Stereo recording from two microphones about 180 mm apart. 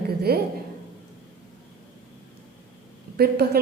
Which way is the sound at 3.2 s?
60° right (ahead or behind).